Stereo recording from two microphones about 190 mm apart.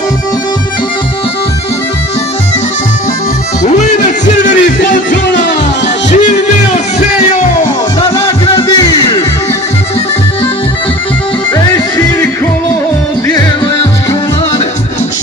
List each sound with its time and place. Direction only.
3.6 s music: 40° left (ahead or behind)
8.5 s music: 20° left (ahead or behind)
11.5 s music: 10° left (ahead or behind)